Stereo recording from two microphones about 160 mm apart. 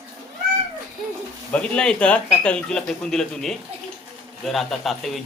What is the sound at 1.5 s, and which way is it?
A man's voice, 5° left (ahead or behind).